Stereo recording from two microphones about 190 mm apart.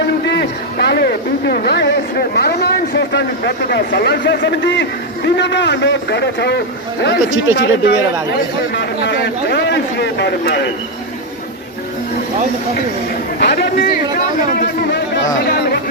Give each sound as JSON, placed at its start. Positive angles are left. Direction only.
{"t": 0.3, "sound": "a sound", "side_deg": 65}
{"t": 1.5, "sound": "speech", "side_deg": 60}
{"t": 13.4, "sound": "speech", "side_deg": 60}